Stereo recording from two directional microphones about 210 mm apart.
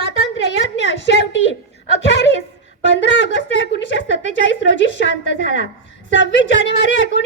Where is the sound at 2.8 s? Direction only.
60° left (ahead or behind).